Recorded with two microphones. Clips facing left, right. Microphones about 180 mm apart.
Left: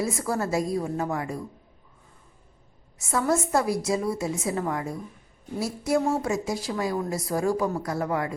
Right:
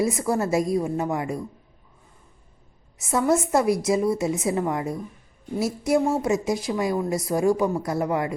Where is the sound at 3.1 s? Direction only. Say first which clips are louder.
Right 3 dB; 20° right (ahead or behind).